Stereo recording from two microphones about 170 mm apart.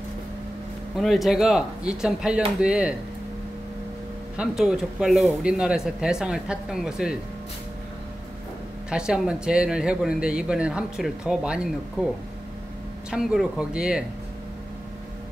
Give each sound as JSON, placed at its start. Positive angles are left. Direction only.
{"t": 0.9, "sound": "speech", "side_deg": 0}
{"t": 4.4, "sound": "speech", "side_deg": -5}
{"t": 8.9, "sound": "speech", "side_deg": -5}
{"t": 13.1, "sound": "speech", "side_deg": -5}